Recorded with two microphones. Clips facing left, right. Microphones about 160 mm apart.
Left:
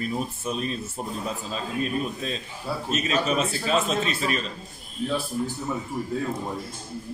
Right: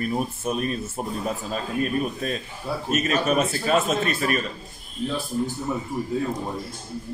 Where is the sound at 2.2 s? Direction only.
55° right (ahead or behind).